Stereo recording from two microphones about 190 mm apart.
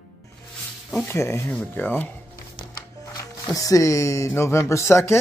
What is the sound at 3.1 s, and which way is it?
Speech, 15° left (ahead or behind).